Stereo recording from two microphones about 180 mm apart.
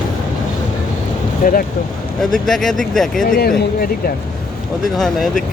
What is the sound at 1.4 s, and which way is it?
Speech, 50° left (ahead or behind).